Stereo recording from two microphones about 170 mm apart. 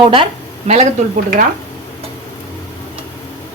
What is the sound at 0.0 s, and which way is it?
Speech, 30° right (ahead or behind).